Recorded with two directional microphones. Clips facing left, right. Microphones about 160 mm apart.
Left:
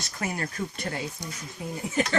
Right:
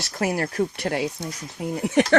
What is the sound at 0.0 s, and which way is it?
Speech, 75° right (ahead or behind).